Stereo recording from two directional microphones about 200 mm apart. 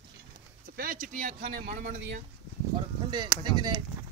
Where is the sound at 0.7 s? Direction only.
45° right (ahead or behind).